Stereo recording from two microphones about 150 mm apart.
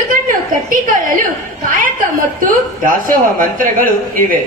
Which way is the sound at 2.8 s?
70° right (ahead or behind).